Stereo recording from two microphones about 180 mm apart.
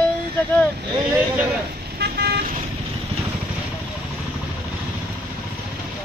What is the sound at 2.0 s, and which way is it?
Vehicle, 65° right (ahead or behind).